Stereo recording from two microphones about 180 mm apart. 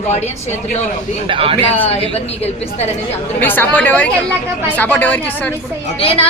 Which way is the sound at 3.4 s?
10° left (ahead or behind).